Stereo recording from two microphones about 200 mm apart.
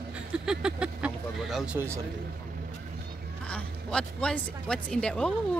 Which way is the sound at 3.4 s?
5° left (ahead or behind).